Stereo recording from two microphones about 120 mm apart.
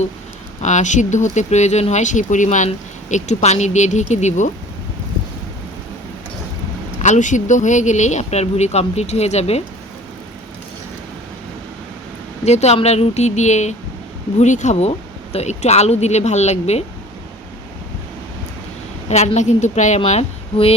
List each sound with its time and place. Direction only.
0.6 s speech: 90° left
7.0 s speech: 85° left; by 9.6 s 60° left (ahead or behind)
12.5 s speech: 65° left (ahead or behind)
14.3 s speech: 90° left; by 16.8 s 65° left (ahead or behind)
19.0 s speech: 65° left (ahead or behind)
20.1 s a woman's voice: 60° left (ahead or behind)